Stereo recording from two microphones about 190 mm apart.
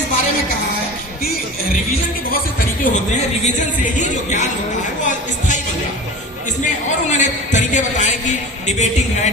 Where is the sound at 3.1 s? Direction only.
40° left (ahead or behind).